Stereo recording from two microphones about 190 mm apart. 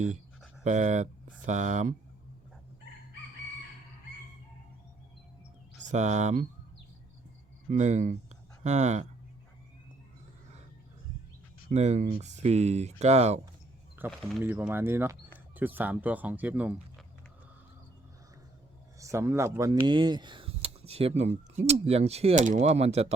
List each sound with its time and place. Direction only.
0.6 s speech: 40° right (ahead or behind)
5.9 s speech: 40° right (ahead or behind)
7.7 s speech: 40° right (ahead or behind)
11.7 s speech: 35° right (ahead or behind)
14.0 s speech: 10° right (ahead or behind)
18.9 s speech: 15° right (ahead or behind); by 23.1 s 35° right (ahead or behind)